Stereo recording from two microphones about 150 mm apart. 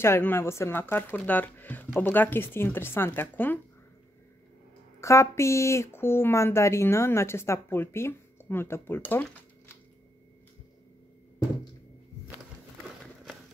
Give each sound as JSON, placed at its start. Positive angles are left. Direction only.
{"t": 0.0, "sound": "speech", "side_deg": 15}
{"t": 5.0, "sound": "speech", "side_deg": 20}